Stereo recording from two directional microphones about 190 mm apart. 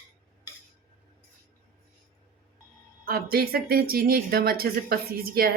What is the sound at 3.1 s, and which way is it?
A woman's voice, 50° right (ahead or behind).